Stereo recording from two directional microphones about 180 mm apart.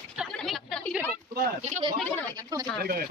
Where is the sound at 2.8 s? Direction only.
55° right (ahead or behind).